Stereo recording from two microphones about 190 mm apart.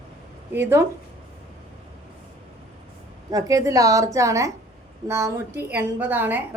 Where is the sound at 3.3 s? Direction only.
20° right (ahead or behind).